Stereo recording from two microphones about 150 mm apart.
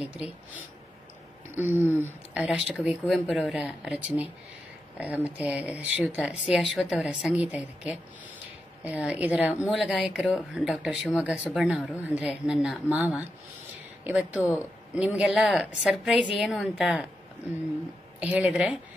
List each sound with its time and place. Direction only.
0.0 s speech: 10° right (ahead or behind)
1.8 s speech: 15° left (ahead or behind)
2.0 s speech: 10° right (ahead or behind)
18.2 s speech: 10° right (ahead or behind)